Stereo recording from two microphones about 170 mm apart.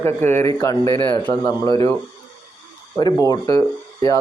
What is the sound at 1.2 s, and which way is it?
Speech, 15° left (ahead or behind).